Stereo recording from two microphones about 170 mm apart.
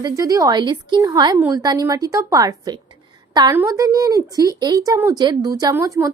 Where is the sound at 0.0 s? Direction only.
20° right (ahead or behind).